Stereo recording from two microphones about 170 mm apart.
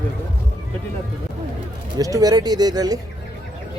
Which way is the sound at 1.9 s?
20° right (ahead or behind).